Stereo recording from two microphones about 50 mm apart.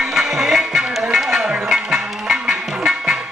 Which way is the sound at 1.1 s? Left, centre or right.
Centre.